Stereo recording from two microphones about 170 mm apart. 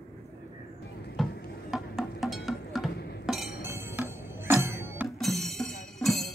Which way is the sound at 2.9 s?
75° left (ahead or behind).